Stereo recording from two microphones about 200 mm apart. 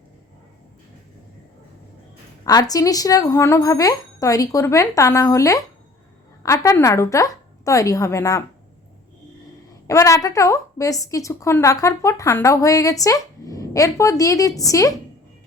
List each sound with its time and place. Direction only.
2.4 s a woman's voice: 20° left (ahead or behind)
9.8 s a woman's voice: 15° left (ahead or behind)